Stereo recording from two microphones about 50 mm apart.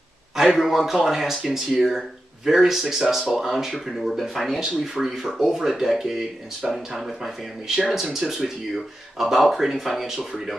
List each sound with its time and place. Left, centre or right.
0.6 s speech: centre